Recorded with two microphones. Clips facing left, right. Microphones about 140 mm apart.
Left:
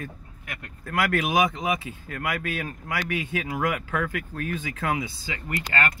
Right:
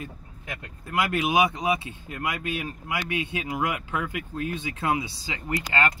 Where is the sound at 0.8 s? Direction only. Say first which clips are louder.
Even; 15° right (ahead or behind).